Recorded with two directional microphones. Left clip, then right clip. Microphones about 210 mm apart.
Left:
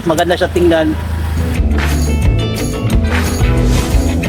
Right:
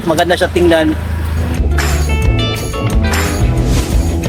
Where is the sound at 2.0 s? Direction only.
Centre (ahead or behind).